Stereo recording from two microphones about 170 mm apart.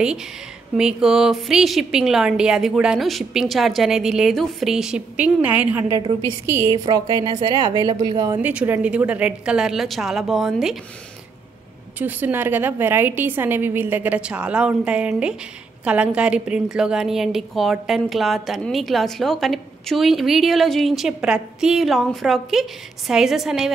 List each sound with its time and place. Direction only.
0.7 s a woman's voice: 5° right (ahead or behind)
5.9 s a woman's voice: 25° right (ahead or behind)
8.4 s a woman's voice: 10° right (ahead or behind)
12.0 s a woman's voice: 10° right (ahead or behind)